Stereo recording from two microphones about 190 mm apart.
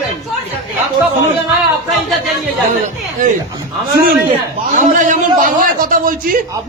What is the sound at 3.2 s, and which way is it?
Speech, 45° right (ahead or behind).